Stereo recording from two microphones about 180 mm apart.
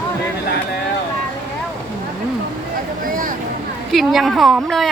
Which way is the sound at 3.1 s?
50° right (ahead or behind).